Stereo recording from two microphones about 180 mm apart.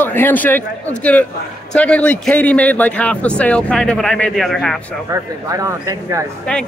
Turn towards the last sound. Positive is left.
turn(degrees=5)  # may be behind; listen again after turning